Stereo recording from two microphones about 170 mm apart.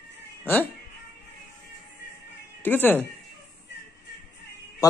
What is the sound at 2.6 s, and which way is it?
Speech, 10° left (ahead or behind).